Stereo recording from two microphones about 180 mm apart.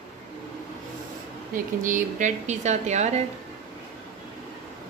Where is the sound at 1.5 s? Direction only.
45° right (ahead or behind).